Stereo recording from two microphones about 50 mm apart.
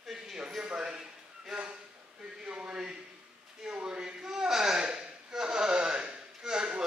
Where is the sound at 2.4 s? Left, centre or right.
Centre.